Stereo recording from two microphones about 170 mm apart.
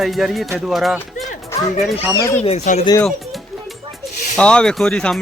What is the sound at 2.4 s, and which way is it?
Speech, 40° left (ahead or behind).